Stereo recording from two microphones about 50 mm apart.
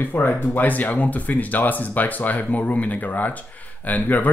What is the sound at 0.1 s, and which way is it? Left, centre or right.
Speech, left.